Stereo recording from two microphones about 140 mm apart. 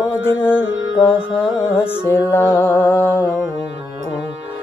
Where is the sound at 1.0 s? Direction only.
15° left (ahead or behind).